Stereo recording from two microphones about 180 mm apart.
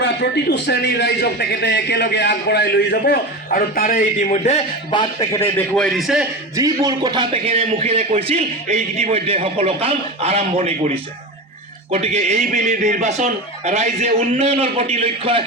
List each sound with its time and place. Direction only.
0.0 s a man's voice: 65° left (ahead or behind); by 4.6 s 40° left (ahead or behind)
4.9 s a man's voice: 20° left (ahead or behind); by 6.2 s centre (ahead or behind)
6.6 s a man's voice: 20° right (ahead or behind)